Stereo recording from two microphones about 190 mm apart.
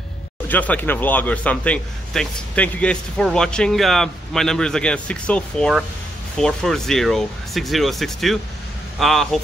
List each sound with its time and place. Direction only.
0.5 s speech: 10° left (ahead or behind)